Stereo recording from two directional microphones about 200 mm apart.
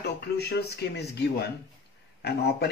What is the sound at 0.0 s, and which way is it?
Speech, 55° left (ahead or behind).